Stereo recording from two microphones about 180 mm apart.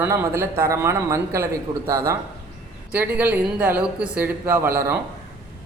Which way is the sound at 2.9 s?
10° right (ahead or behind).